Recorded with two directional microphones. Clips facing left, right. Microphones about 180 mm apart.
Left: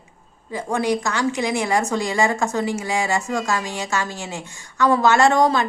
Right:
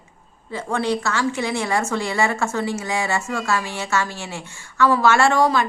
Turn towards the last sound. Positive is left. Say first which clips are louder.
# left 1 dB
turn(degrees=20)  # may be behind; listen again after turning